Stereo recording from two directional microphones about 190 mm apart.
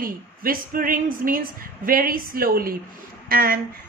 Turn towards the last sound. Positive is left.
turn(degrees=-50)  # may be behind; listen again after turning